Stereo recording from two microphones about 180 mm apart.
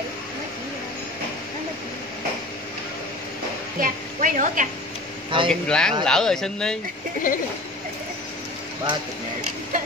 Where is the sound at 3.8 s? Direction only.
45° right (ahead or behind).